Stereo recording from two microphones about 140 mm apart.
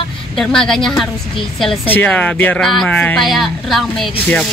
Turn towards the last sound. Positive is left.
turn(degrees=5)  # may be behind; listen again after turning